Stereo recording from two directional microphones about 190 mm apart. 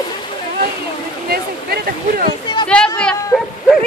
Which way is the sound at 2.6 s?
5° left (ahead or behind).